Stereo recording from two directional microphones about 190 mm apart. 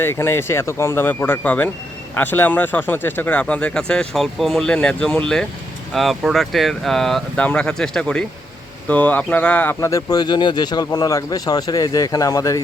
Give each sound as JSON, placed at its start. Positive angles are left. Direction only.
{"t": 0.0, "sound": "speech", "side_deg": 15}